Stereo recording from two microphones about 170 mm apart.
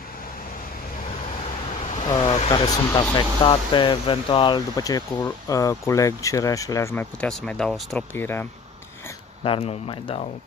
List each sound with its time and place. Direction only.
2.0 s speech: 40° left (ahead or behind)
2.6 s speech: 25° left (ahead or behind)
9.4 s speech: 35° left (ahead or behind)